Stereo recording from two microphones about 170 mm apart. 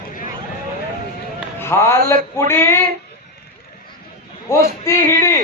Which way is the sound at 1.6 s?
15° left (ahead or behind).